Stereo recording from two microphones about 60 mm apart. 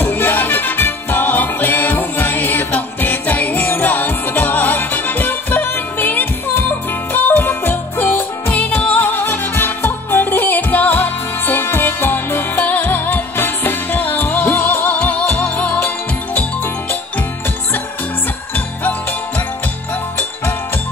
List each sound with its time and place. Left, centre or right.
0.0 s music: left